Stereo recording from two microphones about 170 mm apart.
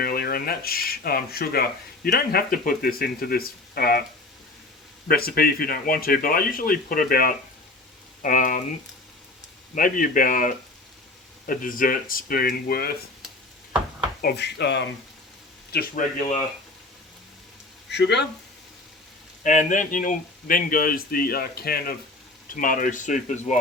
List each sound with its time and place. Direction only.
0.0 s speech: 60° left (ahead or behind)
5.0 s speech: 60° left (ahead or behind)
9.7 s speech: 55° left (ahead or behind)
14.2 s speech: 70° left (ahead or behind); by 14.8 s 90° left
15.7 s speech: 60° left (ahead or behind)
17.8 s speech: 80° left
19.4 s speech: 45° left (ahead or behind)